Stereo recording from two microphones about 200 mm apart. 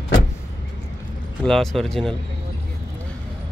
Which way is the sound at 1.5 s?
Centre (ahead or behind).